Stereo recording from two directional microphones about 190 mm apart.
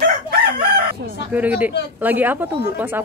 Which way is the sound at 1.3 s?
10° right (ahead or behind).